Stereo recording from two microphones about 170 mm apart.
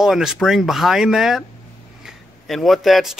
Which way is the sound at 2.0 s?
Centre (ahead or behind).